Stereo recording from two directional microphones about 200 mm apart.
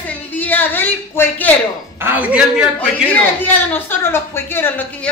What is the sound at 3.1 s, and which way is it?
A woman's voice, 10° left (ahead or behind).